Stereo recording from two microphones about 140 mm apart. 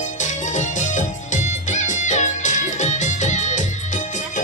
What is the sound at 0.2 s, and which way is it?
Music, 60° left (ahead or behind).